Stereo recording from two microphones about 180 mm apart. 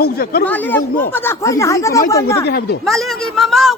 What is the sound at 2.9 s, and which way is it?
Speech, centre (ahead or behind).